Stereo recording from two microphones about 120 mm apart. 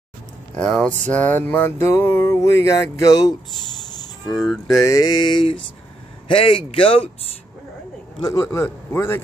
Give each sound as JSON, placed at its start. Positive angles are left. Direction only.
{"t": 0.6, "sound": "music", "side_deg": 5}
{"t": 4.8, "sound": "mantra", "side_deg": 35}
{"t": 6.2, "sound": "speech", "side_deg": 50}
{"t": 8.2, "sound": "music", "side_deg": 30}